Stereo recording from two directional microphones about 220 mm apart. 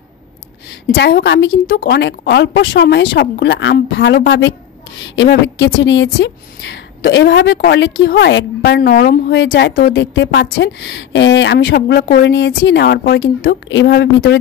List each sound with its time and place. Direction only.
0.7 s a woman's voice: 50° left (ahead or behind)